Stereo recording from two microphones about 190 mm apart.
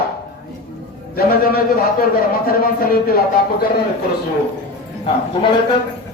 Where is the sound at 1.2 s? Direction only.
50° left (ahead or behind).